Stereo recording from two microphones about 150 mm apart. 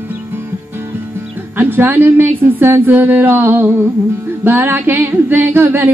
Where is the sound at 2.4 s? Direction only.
15° right (ahead or behind).